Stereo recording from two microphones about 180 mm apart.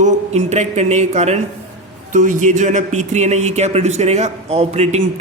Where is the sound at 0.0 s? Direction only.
40° right (ahead or behind).